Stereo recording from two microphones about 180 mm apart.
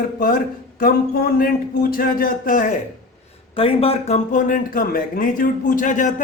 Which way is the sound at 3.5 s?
30° left (ahead or behind).